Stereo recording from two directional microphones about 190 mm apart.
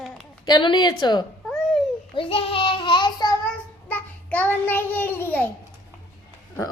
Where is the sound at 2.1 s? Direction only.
30° left (ahead or behind).